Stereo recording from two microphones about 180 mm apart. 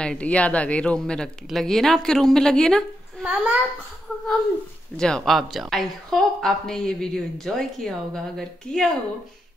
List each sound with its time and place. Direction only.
0.0 s a woman's voice: 5° left (ahead or behind)
4.9 s a woman's voice: 5° left (ahead or behind)